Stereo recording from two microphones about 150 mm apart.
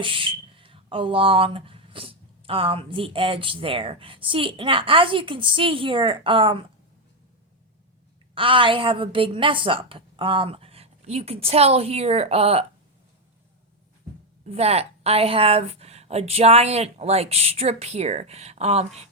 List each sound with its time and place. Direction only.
0.0 s speech: 35° right (ahead or behind)
8.4 s speech: 35° right (ahead or behind)
14.4 s a woman's voice: 45° right (ahead or behind)